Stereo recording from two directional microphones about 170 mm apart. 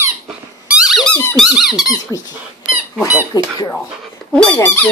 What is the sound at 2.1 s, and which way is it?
Speech, 25° left (ahead or behind).